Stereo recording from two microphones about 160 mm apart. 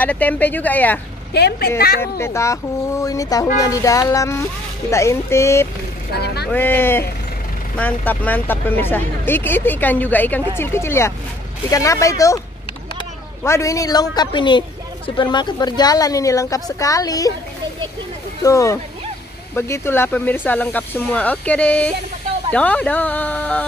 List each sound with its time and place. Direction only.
0.0 s speech: 10° left (ahead or behind)
1.3 s a woman's voice: 90° left
2.0 s a woman's voice: 15° left (ahead or behind)
6.1 s a woman's voice: 90° left
6.5 s a woman's voice: 15° left (ahead or behind)
13.4 s a woman's voice: 20° left (ahead or behind)
18.4 s a woman's voice: 20° left (ahead or behind)